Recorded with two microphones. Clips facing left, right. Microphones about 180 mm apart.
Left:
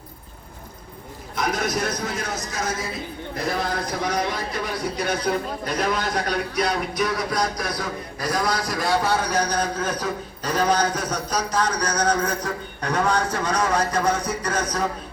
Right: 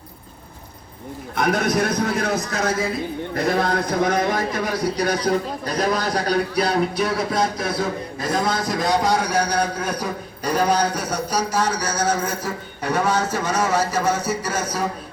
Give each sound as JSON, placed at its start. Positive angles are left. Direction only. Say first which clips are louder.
{"t": 1.4, "sound": "a man's voice", "louder": "right 5 dB", "side_deg": -60}